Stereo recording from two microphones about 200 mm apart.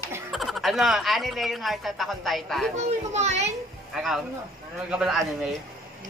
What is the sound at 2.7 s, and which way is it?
Speech, 35° right (ahead or behind).